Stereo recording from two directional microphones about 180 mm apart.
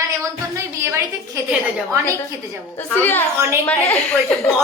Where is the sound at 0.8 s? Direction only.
15° right (ahead or behind).